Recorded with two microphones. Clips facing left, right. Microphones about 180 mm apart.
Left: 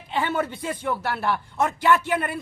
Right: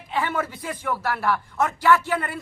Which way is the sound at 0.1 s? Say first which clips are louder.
Left 1 dB; 25° left (ahead or behind).